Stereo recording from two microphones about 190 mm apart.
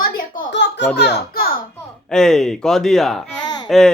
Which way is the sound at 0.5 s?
70° left (ahead or behind).